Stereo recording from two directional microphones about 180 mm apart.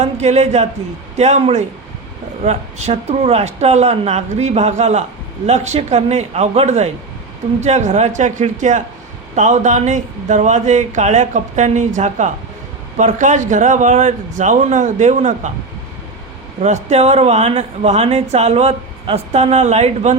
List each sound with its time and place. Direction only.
0.0 s a man's voice: 40° right (ahead or behind)
16.6 s speech: 40° right (ahead or behind)